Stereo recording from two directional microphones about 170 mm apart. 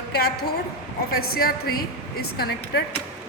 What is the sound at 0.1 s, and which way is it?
A woman's voice, 70° left (ahead or behind).